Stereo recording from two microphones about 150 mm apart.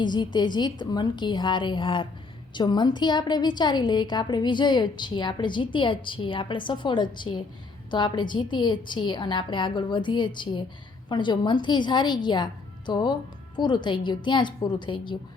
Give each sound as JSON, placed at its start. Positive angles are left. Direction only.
{"t": 0.0, "sound": "a woman's voice", "side_deg": 30}